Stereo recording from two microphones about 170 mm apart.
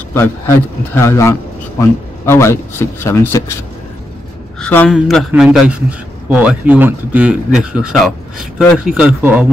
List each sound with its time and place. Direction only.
0.1 s a man's voice: 15° left (ahead or behind)
4.6 s a man's voice: 5° left (ahead or behind)